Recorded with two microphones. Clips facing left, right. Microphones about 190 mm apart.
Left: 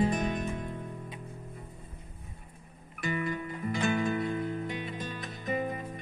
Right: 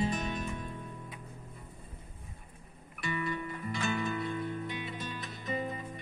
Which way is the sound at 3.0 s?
45° left (ahead or behind).